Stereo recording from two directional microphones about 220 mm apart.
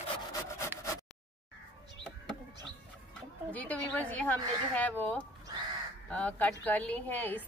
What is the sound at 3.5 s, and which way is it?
Speech, 5° left (ahead or behind).